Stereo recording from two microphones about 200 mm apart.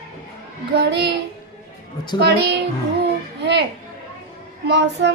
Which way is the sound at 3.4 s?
60° right (ahead or behind).